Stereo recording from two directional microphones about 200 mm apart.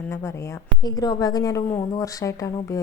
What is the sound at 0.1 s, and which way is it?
Speech, 15° left (ahead or behind).